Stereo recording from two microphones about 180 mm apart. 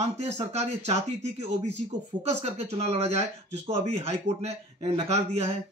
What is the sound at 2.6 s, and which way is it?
A man's voice, 35° right (ahead or behind).